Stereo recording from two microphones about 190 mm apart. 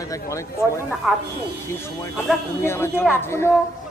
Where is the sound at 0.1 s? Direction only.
15° left (ahead or behind).